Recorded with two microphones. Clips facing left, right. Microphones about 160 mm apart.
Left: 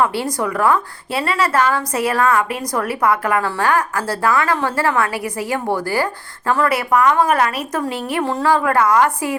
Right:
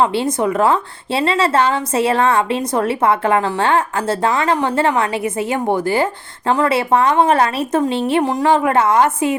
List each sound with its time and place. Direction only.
0.0 s a woman's voice: 20° right (ahead or behind)